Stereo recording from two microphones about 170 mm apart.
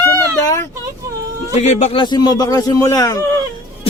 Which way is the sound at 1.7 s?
40° left (ahead or behind).